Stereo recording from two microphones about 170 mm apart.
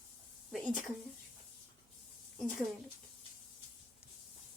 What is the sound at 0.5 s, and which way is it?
Speech, 5° right (ahead or behind).